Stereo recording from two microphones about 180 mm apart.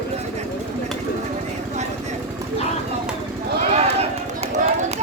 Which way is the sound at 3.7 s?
35° right (ahead or behind).